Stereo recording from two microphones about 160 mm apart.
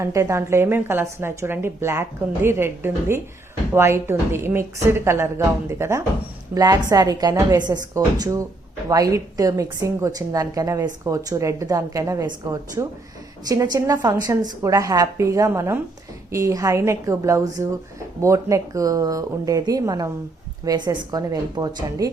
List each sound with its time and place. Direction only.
0.0 s a woman's voice: 15° right (ahead or behind)